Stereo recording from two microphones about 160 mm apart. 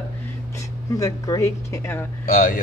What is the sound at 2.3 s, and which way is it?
Speech, 65° left (ahead or behind).